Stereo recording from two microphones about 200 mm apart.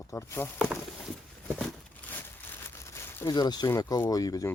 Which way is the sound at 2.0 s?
5° left (ahead or behind).